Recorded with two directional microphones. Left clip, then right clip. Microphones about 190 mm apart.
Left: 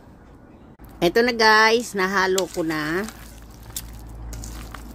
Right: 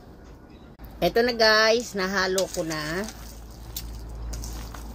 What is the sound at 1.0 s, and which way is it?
Speech, 65° left (ahead or behind).